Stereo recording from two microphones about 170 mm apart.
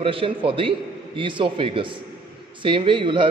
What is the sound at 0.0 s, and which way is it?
A man's voice, 30° right (ahead or behind).